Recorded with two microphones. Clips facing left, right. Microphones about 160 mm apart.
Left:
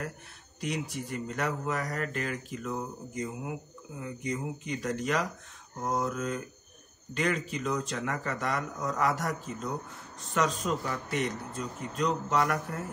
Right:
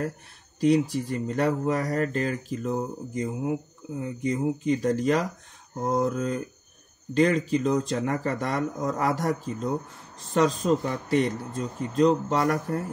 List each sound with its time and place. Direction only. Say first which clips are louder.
0.6 s speech: right 12 dB; 35° right (ahead or behind)